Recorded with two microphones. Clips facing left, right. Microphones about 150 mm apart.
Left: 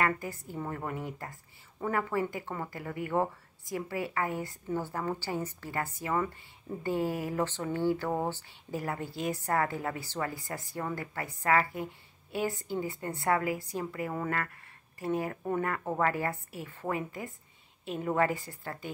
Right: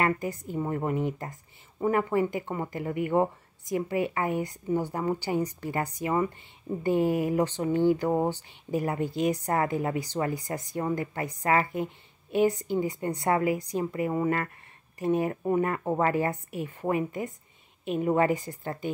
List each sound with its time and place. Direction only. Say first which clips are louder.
0.0 s speech: right 4 dB; 20° right (ahead or behind)